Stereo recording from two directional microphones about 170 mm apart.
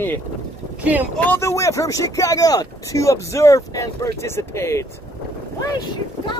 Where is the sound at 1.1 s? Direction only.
10° left (ahead or behind).